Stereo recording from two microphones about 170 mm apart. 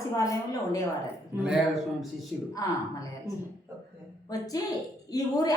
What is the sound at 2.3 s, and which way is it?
Speech, 5° right (ahead or behind).